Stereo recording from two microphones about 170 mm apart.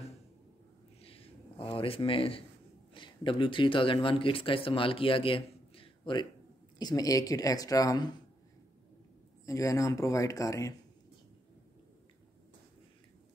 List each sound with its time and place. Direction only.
1.0 s a sound: 35° left (ahead or behind)
2.9 s speech: 30° left (ahead or behind)
9.5 s speech: 20° left (ahead or behind)